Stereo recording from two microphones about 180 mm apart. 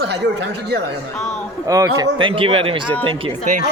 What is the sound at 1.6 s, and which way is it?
Speech, 20° right (ahead or behind).